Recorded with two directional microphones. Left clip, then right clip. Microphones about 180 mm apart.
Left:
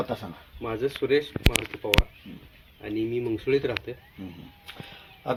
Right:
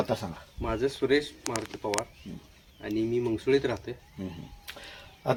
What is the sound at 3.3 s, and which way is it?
Speech, 25° right (ahead or behind).